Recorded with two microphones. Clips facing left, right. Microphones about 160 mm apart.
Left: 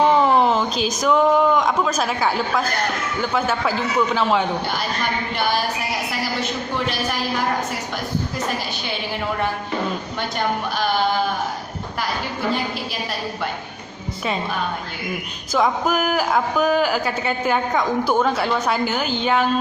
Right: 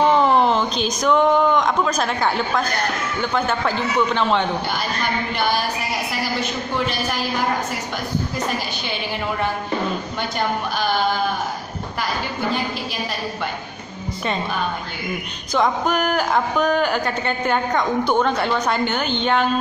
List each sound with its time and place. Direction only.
0.0 s a woman's voice: centre (ahead or behind)
15.5 s a woman's voice: 5° left (ahead or behind)